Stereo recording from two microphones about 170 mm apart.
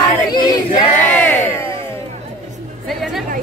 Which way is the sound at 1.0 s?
10° left (ahead or behind).